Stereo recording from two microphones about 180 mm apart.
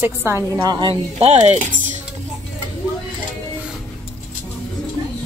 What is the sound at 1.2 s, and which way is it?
Music, 35° right (ahead or behind).